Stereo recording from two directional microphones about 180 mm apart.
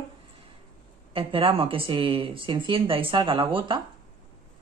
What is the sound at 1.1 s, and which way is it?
Speech, 30° right (ahead or behind).